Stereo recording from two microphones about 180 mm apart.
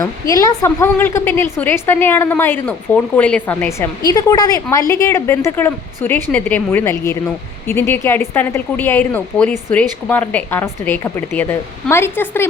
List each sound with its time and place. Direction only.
0.0 s speech: 20° left (ahead or behind)